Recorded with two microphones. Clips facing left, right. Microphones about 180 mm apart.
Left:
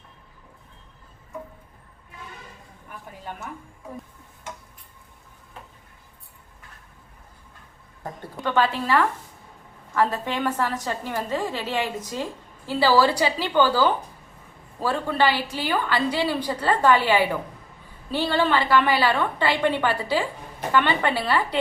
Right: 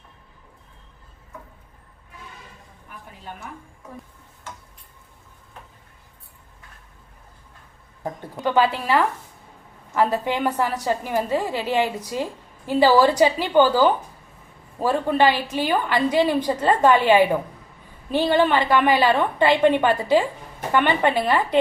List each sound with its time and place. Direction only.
8.4 s a woman's voice: 15° right (ahead or behind)